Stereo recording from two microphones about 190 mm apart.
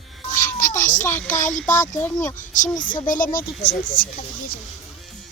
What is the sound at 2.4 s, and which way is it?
Speech, 40° left (ahead or behind).